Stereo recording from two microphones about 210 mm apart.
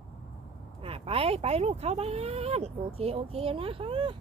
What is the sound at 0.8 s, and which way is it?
Speech, 25° right (ahead or behind).